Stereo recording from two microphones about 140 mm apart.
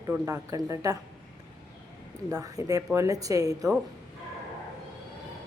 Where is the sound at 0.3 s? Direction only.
25° right (ahead or behind).